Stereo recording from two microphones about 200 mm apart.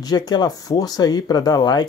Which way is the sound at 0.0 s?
20° left (ahead or behind).